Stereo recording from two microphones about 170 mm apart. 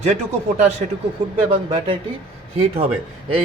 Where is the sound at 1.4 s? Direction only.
30° right (ahead or behind).